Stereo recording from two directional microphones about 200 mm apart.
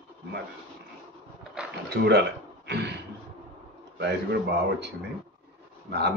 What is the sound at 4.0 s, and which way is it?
Speech, 55° right (ahead or behind).